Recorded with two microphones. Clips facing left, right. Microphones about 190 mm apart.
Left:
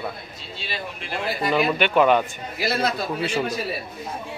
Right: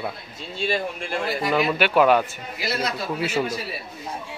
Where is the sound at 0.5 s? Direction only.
50° right (ahead or behind).